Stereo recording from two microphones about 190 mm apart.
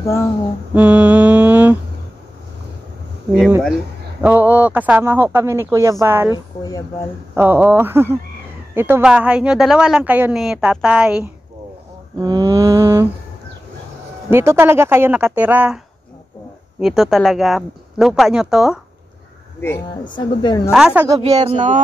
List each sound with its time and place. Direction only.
0.7 s mantra: 5° right (ahead or behind)
3.3 s a sound: 5° left (ahead or behind)
3.6 s a man's voice: 5° right (ahead or behind)
6.3 s speech: 20° left (ahead or behind)
7.3 s a man's voice: 10° right (ahead or behind)
12.2 s a man's voice: 20° right (ahead or behind)
14.3 s a man's voice: 15° right (ahead or behind)
16.8 s speech: centre (ahead or behind)
20.1 s speech: 25° left (ahead or behind)
20.7 s a man's voice: 5° right (ahead or behind)
21.2 s speech: 30° right (ahead or behind)